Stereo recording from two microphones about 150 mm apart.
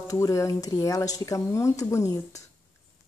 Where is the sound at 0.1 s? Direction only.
20° left (ahead or behind).